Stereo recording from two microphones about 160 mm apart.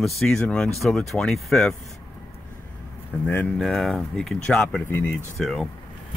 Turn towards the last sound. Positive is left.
turn(degrees=0)  # may be behind; listen again after turning